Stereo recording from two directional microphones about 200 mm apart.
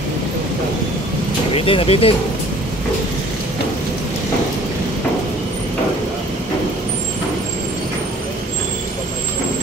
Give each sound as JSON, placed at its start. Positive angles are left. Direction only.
{"t": 1.5, "sound": "speech", "side_deg": 30}